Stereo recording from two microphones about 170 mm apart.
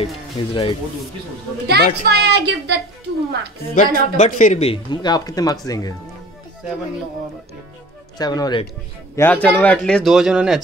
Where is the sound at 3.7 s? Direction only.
45° left (ahead or behind).